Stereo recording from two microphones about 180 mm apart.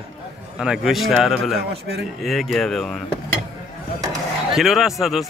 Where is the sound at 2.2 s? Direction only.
Centre (ahead or behind).